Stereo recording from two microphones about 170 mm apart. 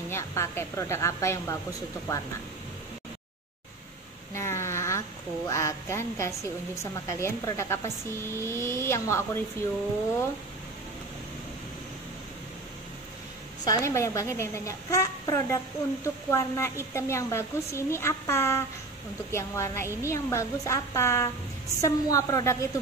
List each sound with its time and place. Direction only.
0.1 s a woman's voice: 15° left (ahead or behind)
4.3 s a woman's voice: 15° left (ahead or behind)
13.7 s a woman's voice: 15° left (ahead or behind)